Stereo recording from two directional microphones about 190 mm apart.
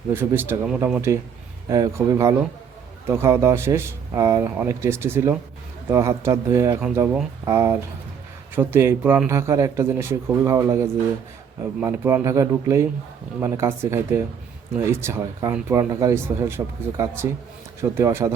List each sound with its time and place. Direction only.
0.1 s a man's voice: 10° right (ahead or behind)
1.7 s a man's voice: 20° right (ahead or behind)